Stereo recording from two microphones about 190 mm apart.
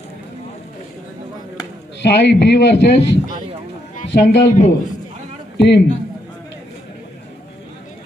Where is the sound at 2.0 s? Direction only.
60° left (ahead or behind).